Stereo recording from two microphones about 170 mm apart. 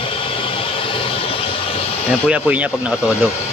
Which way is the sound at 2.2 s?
10° right (ahead or behind).